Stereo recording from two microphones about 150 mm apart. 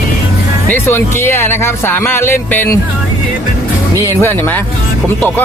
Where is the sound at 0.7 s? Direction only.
15° left (ahead or behind).